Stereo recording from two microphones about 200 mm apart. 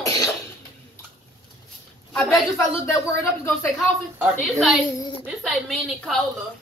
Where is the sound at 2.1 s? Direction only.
5° left (ahead or behind).